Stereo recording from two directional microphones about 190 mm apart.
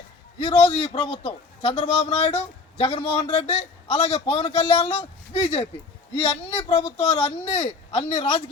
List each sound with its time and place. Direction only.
0.3 s a man's voice: 35° left (ahead or behind)